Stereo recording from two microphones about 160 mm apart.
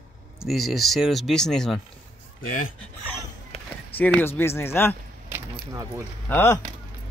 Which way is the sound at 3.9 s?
10° left (ahead or behind).